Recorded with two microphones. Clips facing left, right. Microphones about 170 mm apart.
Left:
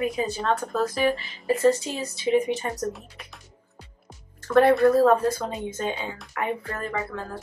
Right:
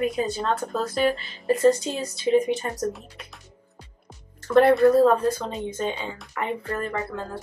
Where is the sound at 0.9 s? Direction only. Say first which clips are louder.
Right 1 dB; 10° left (ahead or behind).